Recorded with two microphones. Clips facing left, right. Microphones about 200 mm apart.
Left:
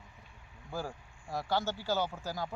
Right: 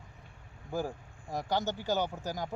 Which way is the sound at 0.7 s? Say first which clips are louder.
Right 4 dB; 15° right (ahead or behind).